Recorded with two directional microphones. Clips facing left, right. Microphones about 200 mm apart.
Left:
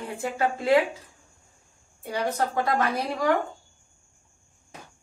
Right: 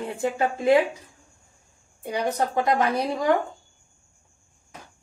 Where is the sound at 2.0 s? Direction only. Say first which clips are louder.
Right 2 dB; 20° right (ahead or behind).